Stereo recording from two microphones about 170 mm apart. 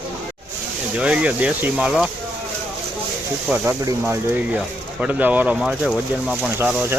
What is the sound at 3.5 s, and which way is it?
Speech, 10° right (ahead or behind).